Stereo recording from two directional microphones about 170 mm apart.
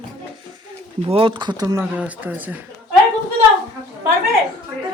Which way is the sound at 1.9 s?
10° right (ahead or behind).